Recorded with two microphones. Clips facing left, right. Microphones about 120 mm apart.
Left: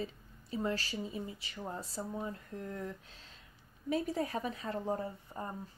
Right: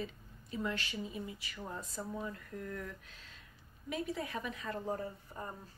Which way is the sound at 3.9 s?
40° left (ahead or behind).